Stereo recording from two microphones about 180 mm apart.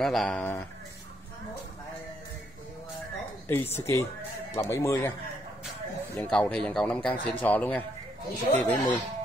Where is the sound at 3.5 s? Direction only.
15° left (ahead or behind).